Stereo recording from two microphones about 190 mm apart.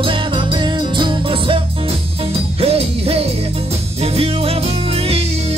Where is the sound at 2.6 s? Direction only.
30° right (ahead or behind).